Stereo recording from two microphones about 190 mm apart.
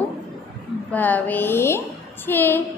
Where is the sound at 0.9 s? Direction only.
10° left (ahead or behind).